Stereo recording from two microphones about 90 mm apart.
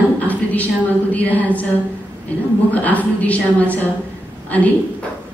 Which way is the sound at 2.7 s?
15° left (ahead or behind).